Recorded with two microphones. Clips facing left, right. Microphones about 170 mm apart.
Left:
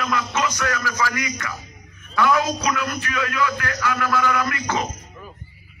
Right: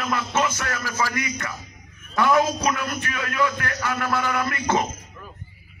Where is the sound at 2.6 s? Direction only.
30° right (ahead or behind).